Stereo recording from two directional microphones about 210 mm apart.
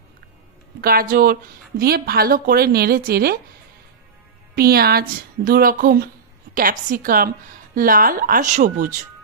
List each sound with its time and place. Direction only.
0.8 s a woman's voice: 45° right (ahead or behind)
4.5 s a woman's voice: 45° right (ahead or behind)